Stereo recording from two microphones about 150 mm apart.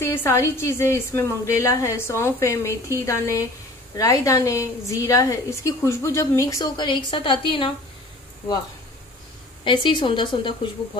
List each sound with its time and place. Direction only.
0.0 s a woman's voice: 15° left (ahead or behind); by 7.7 s 35° left (ahead or behind)
9.7 s a woman's voice: 35° left (ahead or behind)